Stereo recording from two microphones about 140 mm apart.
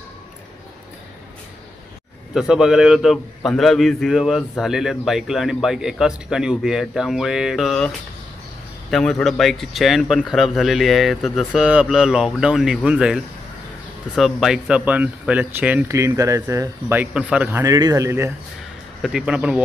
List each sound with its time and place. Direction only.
2.3 s a man's voice: 5° right (ahead or behind)
8.9 s a man's voice: 5° left (ahead or behind); by 18.3 s 20° right (ahead or behind)
19.0 s speech: 5° right (ahead or behind)